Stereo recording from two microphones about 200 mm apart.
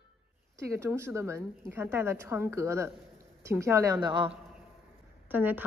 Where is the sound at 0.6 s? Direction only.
15° right (ahead or behind).